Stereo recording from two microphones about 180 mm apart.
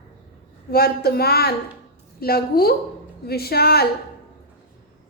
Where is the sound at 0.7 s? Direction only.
60° left (ahead or behind).